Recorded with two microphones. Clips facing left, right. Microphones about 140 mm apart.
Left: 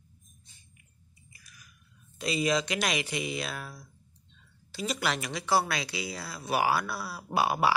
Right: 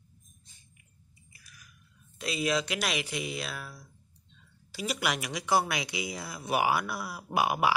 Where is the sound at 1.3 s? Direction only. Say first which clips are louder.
Even; centre (ahead or behind).